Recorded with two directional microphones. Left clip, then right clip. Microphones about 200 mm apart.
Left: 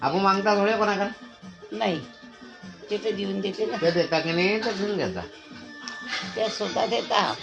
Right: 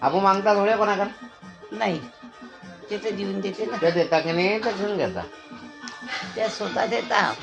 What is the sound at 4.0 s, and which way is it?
Speech, 25° left (ahead or behind).